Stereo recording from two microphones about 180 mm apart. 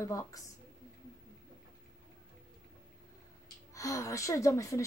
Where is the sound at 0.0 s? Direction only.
15° left (ahead or behind).